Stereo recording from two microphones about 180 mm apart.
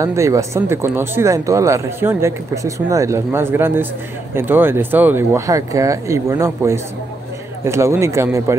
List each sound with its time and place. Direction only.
0.0 s speech: 15° right (ahead or behind)